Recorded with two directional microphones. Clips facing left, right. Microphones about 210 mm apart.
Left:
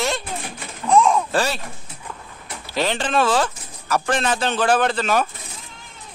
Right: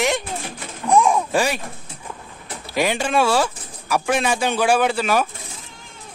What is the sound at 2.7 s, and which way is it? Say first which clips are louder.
Speech: right 1 dB; 10° right (ahead or behind).